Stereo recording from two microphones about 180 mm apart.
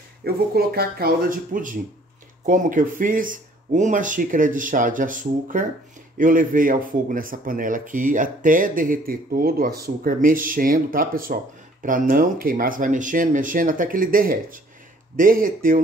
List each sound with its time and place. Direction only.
0.2 s speech: 60° right (ahead or behind)